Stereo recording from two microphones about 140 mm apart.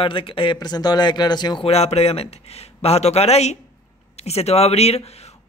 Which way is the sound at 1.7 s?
45° left (ahead or behind).